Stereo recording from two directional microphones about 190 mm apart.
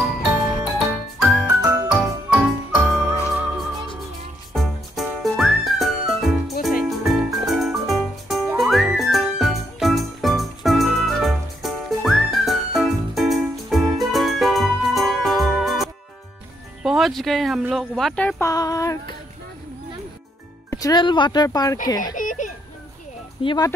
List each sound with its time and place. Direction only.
1.2 s music: centre (ahead or behind)
1.6 s music: 15° right (ahead or behind)
1.9 s music: 5° right (ahead or behind)
4.6 s whistle: centre (ahead or behind)
6.8 s music: centre (ahead or behind)
16.8 s speech: centre (ahead or behind)
18.5 s speech: 20° left (ahead or behind)
20.7 s speech: 20° left (ahead or behind)
22.1 s a sound: 45° left (ahead or behind)
23.4 s speech: 25° left (ahead or behind)